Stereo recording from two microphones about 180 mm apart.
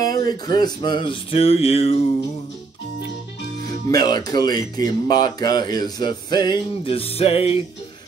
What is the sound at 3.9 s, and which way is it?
Speech, 20° left (ahead or behind).